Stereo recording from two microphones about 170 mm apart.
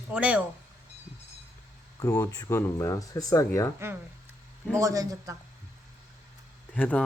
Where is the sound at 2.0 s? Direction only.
15° left (ahead or behind).